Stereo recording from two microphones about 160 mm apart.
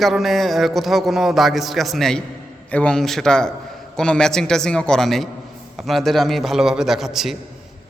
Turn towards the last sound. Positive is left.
turn(degrees=0)  # may be behind; listen again after turning